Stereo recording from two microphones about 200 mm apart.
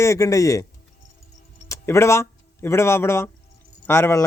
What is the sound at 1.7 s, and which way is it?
Speech, 15° left (ahead or behind).